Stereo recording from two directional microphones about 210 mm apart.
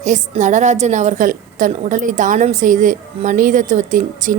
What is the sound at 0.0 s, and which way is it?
A woman's voice, 35° right (ahead or behind).